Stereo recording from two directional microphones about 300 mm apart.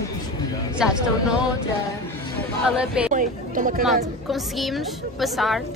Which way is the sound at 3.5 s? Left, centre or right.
Right.